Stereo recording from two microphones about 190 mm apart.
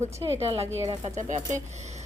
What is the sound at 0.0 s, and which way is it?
Speech, 35° right (ahead or behind).